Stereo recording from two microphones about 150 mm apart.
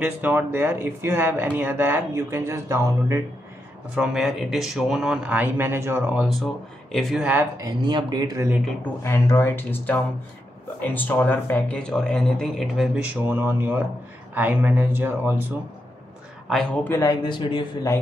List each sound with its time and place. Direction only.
0.0 s speech: 10° right (ahead or behind)
3.9 s speech: 5° right (ahead or behind)
6.2 s speech: centre (ahead or behind)
7.5 s speech: 30° right (ahead or behind)
9.0 s speech: 15° left (ahead or behind); by 15.3 s 15° right (ahead or behind)
16.4 s speech: 5° left (ahead or behind); by 17.6 s 35° left (ahead or behind)